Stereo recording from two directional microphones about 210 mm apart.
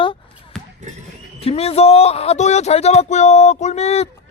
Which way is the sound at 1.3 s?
30° left (ahead or behind).